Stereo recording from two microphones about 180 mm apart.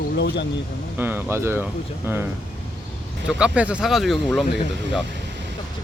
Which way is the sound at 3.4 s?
5° right (ahead or behind).